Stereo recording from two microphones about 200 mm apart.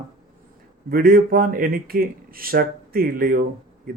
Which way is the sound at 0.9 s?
45° right (ahead or behind).